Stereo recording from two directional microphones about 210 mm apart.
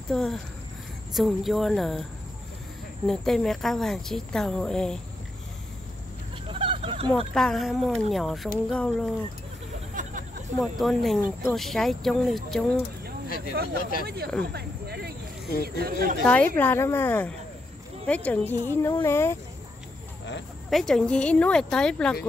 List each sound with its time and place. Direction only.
0.1 s speech: centre (ahead or behind)
3.1 s speech: centre (ahead or behind)
6.5 s a sound: 25° right (ahead or behind)
7.3 s speech: centre (ahead or behind)
10.6 s speech: centre (ahead or behind)
13.5 s speech: 45° right (ahead or behind)
14.4 s a sound: 50° right (ahead or behind)
15.6 s speech: 45° right (ahead or behind)
16.3 s a woman's voice: 10° left (ahead or behind)
20.7 s speech: centre (ahead or behind)